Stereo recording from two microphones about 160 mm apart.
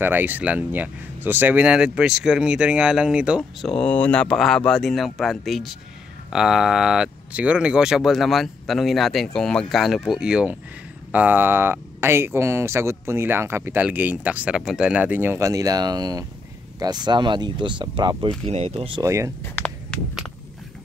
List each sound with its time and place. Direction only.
0.0 s speech: 10° right (ahead or behind)
3.7 s speech: 5° left (ahead or behind); by 18.3 s 30° right (ahead or behind)
18.5 s speech: 40° right (ahead or behind)
19.0 s speech: 20° right (ahead or behind)
19.4 s a sound: 10° left (ahead or behind)